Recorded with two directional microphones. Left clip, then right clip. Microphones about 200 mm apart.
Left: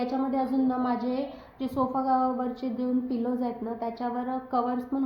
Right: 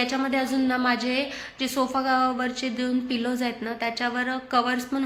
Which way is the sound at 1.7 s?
30° right (ahead or behind).